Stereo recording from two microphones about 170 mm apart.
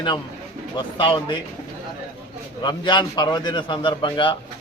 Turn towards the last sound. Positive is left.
turn(degrees=30)  # may be behind; listen again after turning